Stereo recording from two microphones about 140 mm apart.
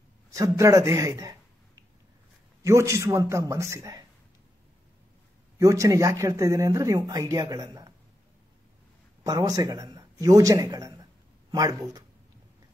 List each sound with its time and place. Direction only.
0.6 s speech: 25° right (ahead or behind)
2.6 s speech: 20° right (ahead or behind)
5.6 s speech: 25° right (ahead or behind)
9.2 s a man's voice: 25° right (ahead or behind)